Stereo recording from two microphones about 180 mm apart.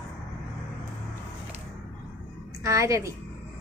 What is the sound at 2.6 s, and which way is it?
Speech, 15° right (ahead or behind).